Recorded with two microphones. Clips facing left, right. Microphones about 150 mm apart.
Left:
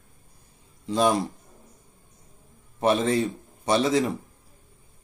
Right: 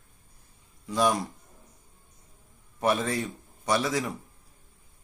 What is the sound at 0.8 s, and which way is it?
Speech, 25° left (ahead or behind).